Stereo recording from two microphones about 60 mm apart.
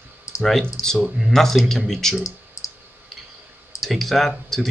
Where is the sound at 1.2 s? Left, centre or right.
Centre.